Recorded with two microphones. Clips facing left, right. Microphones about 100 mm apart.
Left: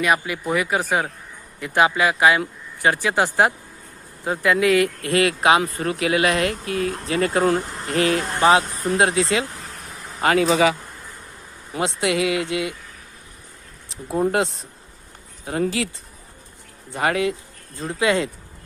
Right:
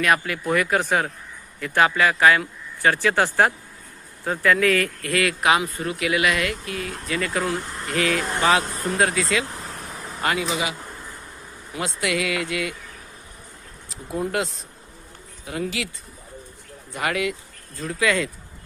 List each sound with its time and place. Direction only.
0.0 s speech: 5° left (ahead or behind)
1.5 s speech: 15° left (ahead or behind)
10.2 s speech: 40° left (ahead or behind)
11.8 s speech: 25° left (ahead or behind)
13.9 s speech: 30° left (ahead or behind)
16.9 s speech: 30° left (ahead or behind)